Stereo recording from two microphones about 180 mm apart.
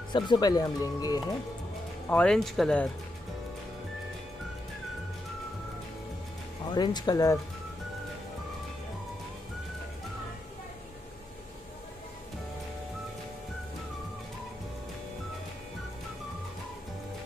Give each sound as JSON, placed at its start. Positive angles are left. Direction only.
{"t": 0.1, "sound": "speech", "side_deg": 25}
{"t": 2.0, "sound": "speech", "side_deg": 5}
{"t": 6.7, "sound": "speech", "side_deg": 25}